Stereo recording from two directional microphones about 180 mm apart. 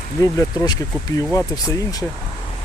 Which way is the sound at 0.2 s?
20° left (ahead or behind).